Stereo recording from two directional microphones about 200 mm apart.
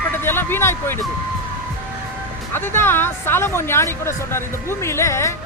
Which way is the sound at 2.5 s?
10° left (ahead or behind).